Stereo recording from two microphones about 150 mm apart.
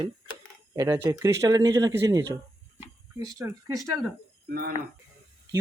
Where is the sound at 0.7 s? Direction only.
20° right (ahead or behind).